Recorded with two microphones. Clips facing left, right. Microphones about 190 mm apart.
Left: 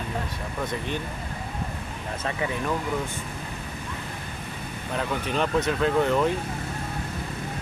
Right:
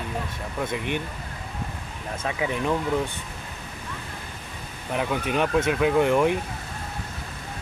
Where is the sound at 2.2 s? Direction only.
10° right (ahead or behind).